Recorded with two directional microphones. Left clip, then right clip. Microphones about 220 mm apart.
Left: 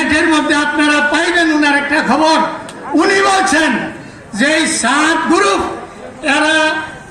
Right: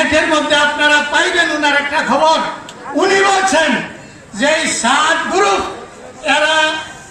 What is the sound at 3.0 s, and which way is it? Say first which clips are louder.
Speech: left 1 dB; 50° left (ahead or behind).